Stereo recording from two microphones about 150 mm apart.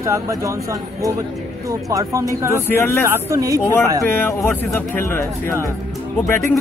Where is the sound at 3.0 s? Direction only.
20° right (ahead or behind).